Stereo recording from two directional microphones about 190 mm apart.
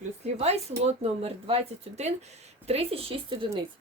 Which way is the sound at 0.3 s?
35° right (ahead or behind).